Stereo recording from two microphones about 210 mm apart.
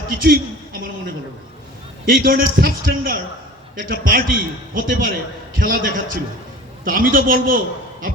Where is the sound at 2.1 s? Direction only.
45° right (ahead or behind).